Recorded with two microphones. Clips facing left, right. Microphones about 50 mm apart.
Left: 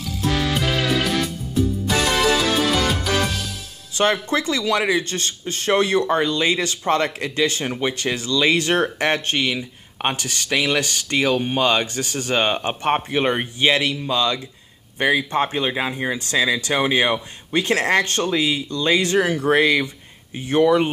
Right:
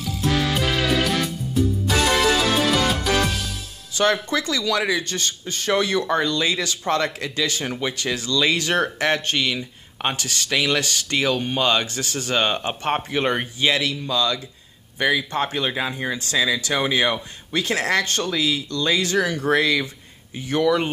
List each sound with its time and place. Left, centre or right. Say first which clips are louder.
0.3 s music: even; centre
3.9 s speech: left 1 dB; left
13.6 s speech: left 3 dB; left